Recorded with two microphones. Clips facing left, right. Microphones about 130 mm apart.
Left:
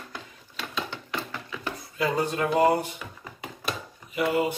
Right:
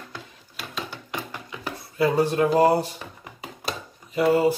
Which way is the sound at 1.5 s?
25° right (ahead or behind).